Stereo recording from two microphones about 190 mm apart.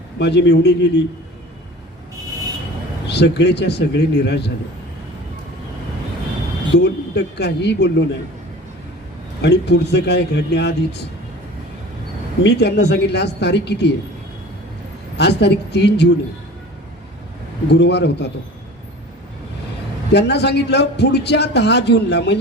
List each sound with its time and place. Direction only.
0.2 s a man's voice: 65° left (ahead or behind)
3.1 s a man's voice: 65° left (ahead or behind)
6.7 s a man's voice: 65° left (ahead or behind)
9.4 s a man's voice: 65° left (ahead or behind)
12.4 s a man's voice: 65° left (ahead or behind)
15.2 s a man's voice: 60° left (ahead or behind)
17.7 s a man's voice: 65° left (ahead or behind)
20.1 s a man's voice: 60° left (ahead or behind)